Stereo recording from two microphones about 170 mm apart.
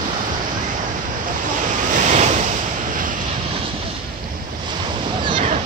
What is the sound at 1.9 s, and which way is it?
Waves, 45° right (ahead or behind).